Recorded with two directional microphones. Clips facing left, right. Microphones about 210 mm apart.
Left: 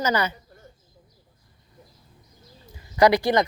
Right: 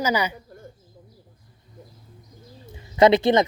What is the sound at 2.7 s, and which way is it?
Bird, 25° right (ahead or behind).